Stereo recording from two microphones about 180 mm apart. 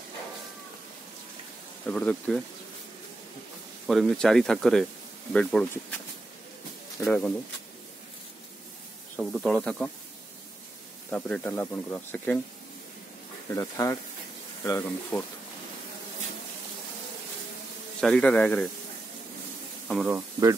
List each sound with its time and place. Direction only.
1.9 s speech: 5° left (ahead or behind)
3.8 s speech: centre (ahead or behind)
7.0 s speech: 10° left (ahead or behind)
9.1 s speech: 5° left (ahead or behind)
11.1 s speech: 5° left (ahead or behind)
13.6 s speech: 15° left (ahead or behind)
18.0 s speech: 5° left (ahead or behind)
19.9 s speech: centre (ahead or behind)
20.2 s speech: 20° right (ahead or behind)